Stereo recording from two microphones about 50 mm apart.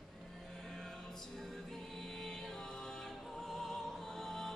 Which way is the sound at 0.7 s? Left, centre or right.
Centre.